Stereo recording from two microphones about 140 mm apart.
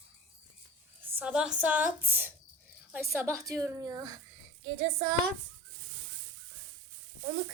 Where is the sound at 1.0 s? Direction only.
15° right (ahead or behind).